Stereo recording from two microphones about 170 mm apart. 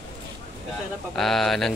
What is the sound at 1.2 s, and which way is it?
Speech, centre (ahead or behind).